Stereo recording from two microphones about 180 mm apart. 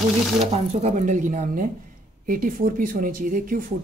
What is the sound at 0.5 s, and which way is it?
Speech, 40° right (ahead or behind).